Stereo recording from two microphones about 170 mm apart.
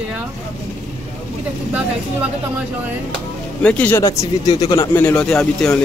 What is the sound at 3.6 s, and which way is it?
Speech, 10° left (ahead or behind).